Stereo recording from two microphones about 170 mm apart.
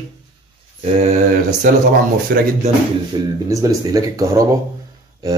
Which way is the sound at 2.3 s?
65° right (ahead or behind).